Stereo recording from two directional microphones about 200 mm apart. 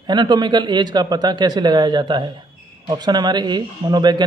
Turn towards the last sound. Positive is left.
turn(degrees=-20)  # may be behind; listen again after turning